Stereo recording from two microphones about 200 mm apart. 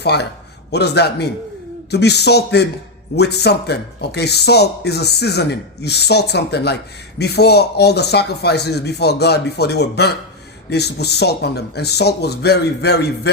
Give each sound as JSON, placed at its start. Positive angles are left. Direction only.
{"t": 0.0, "sound": "speech", "side_deg": 55}